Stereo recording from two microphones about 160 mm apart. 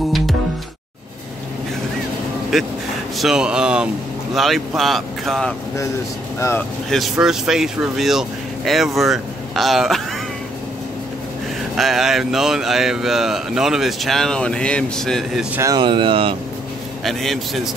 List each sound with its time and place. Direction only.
2.5 s speech: centre (ahead or behind)
6.9 s speech: centre (ahead or behind)
11.7 s speech: centre (ahead or behind)
15.5 s speech: 20° right (ahead or behind)
15.8 s speech: 30° right (ahead or behind)
17.0 s speech: centre (ahead or behind)